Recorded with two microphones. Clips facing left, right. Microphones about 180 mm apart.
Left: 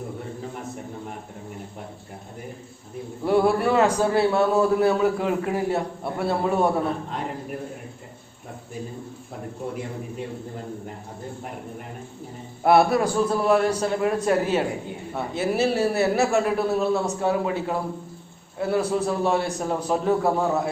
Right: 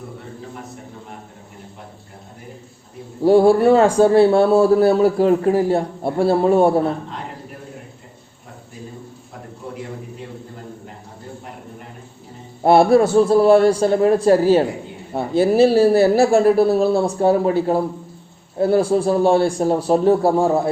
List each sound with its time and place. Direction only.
3.2 s a man's voice: 30° right (ahead or behind)
12.6 s a man's voice: 30° right (ahead or behind)